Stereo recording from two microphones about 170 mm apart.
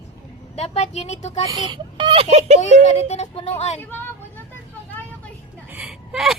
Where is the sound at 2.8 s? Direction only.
40° left (ahead or behind).